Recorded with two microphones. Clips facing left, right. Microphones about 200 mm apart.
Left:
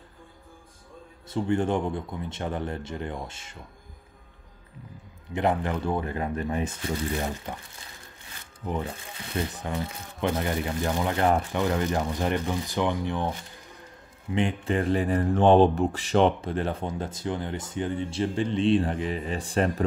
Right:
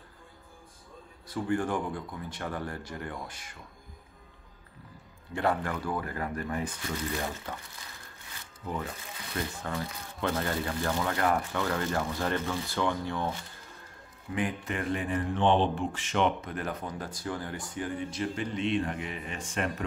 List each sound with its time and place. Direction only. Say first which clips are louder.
1.3 s speech: left 4 dB; 25° left (ahead or behind)
5.3 s speech: left 4 dB; 20° left (ahead or behind)
7.5 s speech: left 3 dB; 15° left (ahead or behind)
8.6 s speech: left 4 dB; 25° left (ahead or behind)
14.3 s speech: left 6 dB; 30° left (ahead or behind)